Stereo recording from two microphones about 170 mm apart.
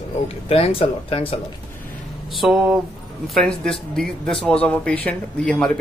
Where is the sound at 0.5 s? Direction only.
35° left (ahead or behind).